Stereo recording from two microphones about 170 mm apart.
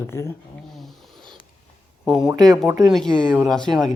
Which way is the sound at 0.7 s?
Centre (ahead or behind).